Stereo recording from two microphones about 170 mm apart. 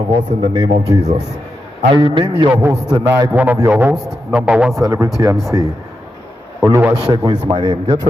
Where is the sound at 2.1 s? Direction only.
25° right (ahead or behind); by 4.8 s 5° right (ahead or behind).